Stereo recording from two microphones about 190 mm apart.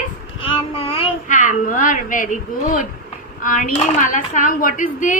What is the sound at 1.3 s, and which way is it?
A woman's voice, 45° left (ahead or behind).